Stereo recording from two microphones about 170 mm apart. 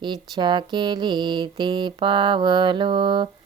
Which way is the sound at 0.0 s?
25° right (ahead or behind).